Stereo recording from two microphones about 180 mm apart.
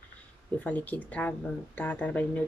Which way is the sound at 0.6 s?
10° left (ahead or behind).